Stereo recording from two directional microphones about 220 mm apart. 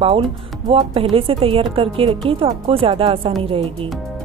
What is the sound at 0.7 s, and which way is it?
Speech, 25° right (ahead or behind).